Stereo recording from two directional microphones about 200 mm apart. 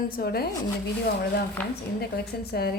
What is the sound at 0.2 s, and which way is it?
Speech, 50° left (ahead or behind).